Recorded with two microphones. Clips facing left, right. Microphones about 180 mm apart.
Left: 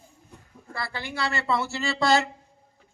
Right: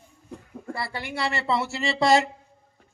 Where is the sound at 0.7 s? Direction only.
25° right (ahead or behind).